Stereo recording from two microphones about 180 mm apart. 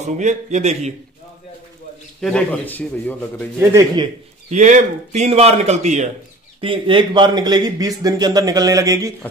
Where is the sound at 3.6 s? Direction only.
15° right (ahead or behind).